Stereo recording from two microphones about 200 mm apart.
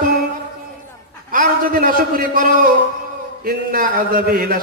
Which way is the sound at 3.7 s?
45° right (ahead or behind).